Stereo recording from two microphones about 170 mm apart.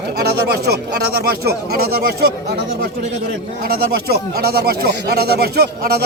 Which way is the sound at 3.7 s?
65° right (ahead or behind).